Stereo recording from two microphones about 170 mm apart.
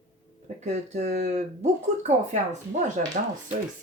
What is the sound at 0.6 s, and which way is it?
Speech, 45° right (ahead or behind).